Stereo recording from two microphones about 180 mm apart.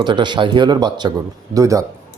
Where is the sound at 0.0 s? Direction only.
25° right (ahead or behind).